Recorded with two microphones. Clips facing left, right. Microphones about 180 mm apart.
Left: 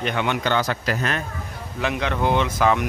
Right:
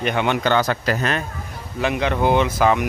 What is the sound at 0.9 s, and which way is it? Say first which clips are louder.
Speech: right 2 dB; 35° right (ahead or behind).